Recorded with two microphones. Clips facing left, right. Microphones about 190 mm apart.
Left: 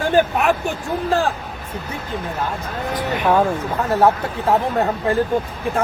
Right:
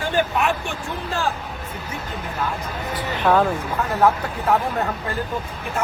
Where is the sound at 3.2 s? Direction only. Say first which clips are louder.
Left 1 dB; 10° left (ahead or behind).